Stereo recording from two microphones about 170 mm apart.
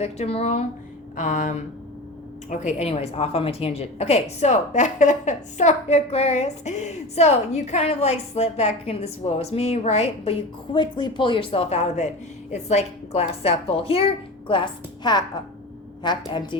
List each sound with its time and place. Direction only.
0.0 s a woman's voice: 35° left (ahead or behind)
1.1 s a sound: 45° left (ahead or behind)
2.5 s a woman's voice: 45° left (ahead or behind); by 16.6 s 25° left (ahead or behind)